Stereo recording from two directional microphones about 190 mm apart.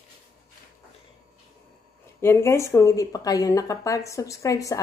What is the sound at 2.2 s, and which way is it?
Speech, 15° left (ahead or behind).